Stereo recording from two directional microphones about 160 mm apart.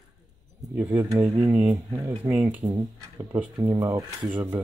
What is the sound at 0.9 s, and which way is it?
Speech, 25° right (ahead or behind).